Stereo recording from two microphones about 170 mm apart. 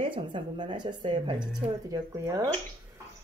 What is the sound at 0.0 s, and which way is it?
A woman's voice, 30° right (ahead or behind).